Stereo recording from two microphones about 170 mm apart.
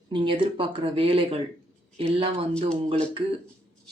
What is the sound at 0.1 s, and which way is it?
Speech, 30° right (ahead or behind).